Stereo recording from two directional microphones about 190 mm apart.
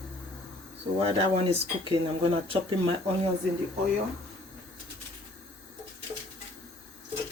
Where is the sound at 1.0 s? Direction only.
25° right (ahead or behind).